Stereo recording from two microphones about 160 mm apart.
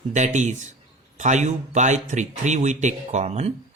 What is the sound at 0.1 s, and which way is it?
Speech, 50° right (ahead or behind).